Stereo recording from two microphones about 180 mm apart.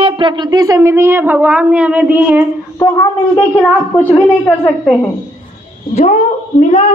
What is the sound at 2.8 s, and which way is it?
Speech, 15° left (ahead or behind).